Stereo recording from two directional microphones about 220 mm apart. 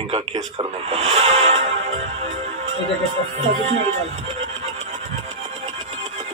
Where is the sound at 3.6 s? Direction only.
30° right (ahead or behind).